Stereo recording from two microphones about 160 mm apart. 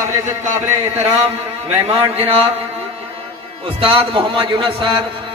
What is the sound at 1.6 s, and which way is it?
Music, 40° right (ahead or behind).